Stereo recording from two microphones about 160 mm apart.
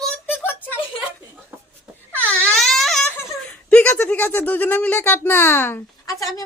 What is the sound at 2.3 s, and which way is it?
Wail, 5° left (ahead or behind).